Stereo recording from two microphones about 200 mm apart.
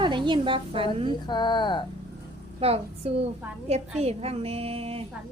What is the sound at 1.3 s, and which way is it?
Speech, 20° left (ahead or behind).